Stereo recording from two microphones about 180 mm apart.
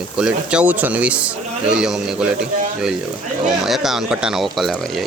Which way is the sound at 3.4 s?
Centre (ahead or behind).